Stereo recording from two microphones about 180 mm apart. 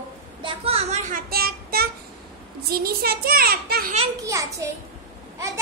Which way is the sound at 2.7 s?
55° right (ahead or behind).